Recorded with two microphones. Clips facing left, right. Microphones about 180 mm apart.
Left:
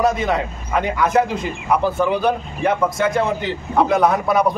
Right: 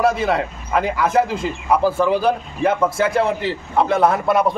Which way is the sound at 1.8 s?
30° right (ahead or behind).